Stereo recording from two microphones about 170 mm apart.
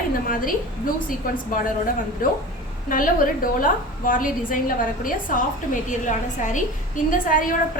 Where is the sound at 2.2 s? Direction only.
55° left (ahead or behind).